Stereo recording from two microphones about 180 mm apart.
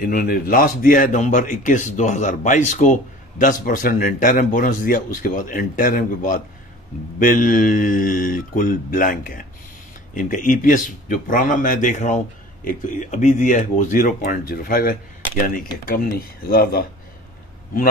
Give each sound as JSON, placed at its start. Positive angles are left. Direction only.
{"t": 0.0, "sound": "a man's voice", "side_deg": 50}